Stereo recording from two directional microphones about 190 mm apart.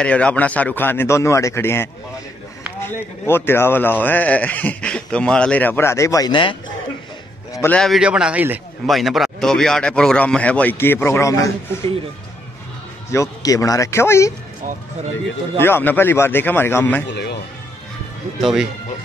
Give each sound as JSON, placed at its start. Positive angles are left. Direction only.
{"t": 0.0, "sound": "speech", "side_deg": 5}
{"t": 7.5, "sound": "a man's voice", "side_deg": 10}
{"t": 13.1, "sound": "speech", "side_deg": 15}
{"t": 15.6, "sound": "speech", "side_deg": 10}
{"t": 17.1, "sound": "speech", "side_deg": 60}
{"t": 18.4, "sound": "a man's voice", "side_deg": -5}